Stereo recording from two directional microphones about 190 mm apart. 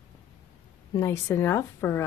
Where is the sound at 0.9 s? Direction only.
15° left (ahead or behind).